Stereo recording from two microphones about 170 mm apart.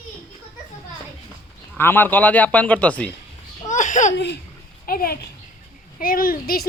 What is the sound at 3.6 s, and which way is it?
Baby laughter, 45° left (ahead or behind).